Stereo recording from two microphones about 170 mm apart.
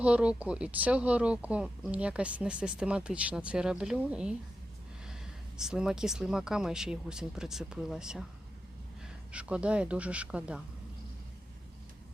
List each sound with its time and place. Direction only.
0.0 s speech: 5° right (ahead or behind)
5.5 s speech: 5° right (ahead or behind)
9.3 s speech: 5° right (ahead or behind)